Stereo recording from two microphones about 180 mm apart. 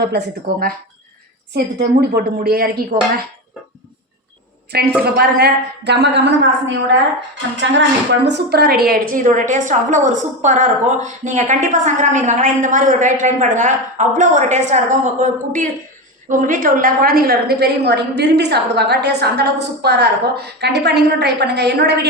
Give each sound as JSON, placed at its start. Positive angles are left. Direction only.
{"t": 1.5, "sound": "a woman's voice", "side_deg": -60}
{"t": 4.7, "sound": "a woman's voice", "side_deg": -60}
{"t": 7.5, "sound": "a woman's voice", "side_deg": -90}